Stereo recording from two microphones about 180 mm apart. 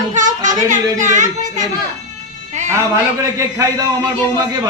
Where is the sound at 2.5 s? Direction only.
40° right (ahead or behind).